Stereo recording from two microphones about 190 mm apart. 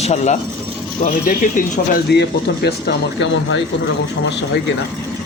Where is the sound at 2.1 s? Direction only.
60° left (ahead or behind).